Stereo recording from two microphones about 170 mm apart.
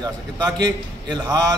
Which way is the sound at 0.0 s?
25° right (ahead or behind).